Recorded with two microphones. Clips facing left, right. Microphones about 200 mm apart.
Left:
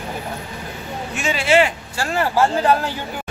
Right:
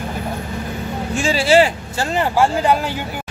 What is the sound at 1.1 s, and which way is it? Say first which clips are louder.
Speech: right 3 dB; 30° right (ahead or behind).